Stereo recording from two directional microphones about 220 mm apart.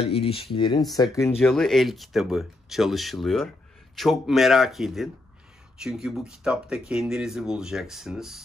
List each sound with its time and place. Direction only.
0.0 s speech: 25° left (ahead or behind)
1.4 s speech: centre (ahead or behind)